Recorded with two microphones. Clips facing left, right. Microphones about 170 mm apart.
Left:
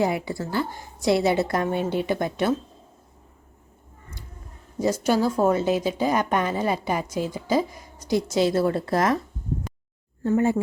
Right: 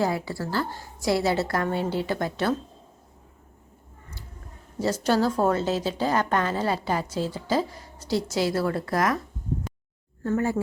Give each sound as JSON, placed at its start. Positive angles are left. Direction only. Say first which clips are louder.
{"t": 0.0, "sound": "a woman's voice", "louder": "left 2 dB", "side_deg": 20}
{"t": 5.0, "sound": "a woman's voice", "louder": "left 1 dB", "side_deg": 10}
{"t": 10.2, "sound": "a woman's voice", "louder": "left 4 dB", "side_deg": 20}